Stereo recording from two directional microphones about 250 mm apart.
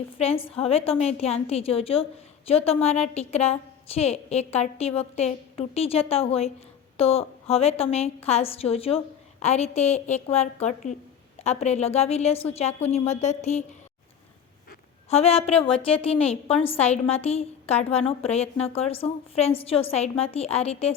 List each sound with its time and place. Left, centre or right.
0.2 s a woman's voice: left
15.1 s a woman's voice: left